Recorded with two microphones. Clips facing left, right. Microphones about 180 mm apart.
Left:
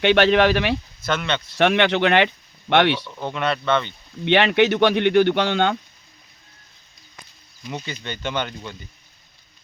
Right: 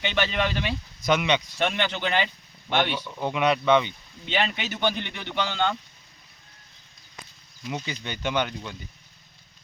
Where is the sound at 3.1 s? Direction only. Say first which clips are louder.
Right 1 dB; 10° right (ahead or behind).